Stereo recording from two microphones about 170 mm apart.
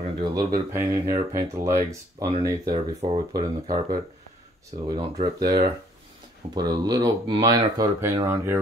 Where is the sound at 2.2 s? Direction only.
20° right (ahead or behind).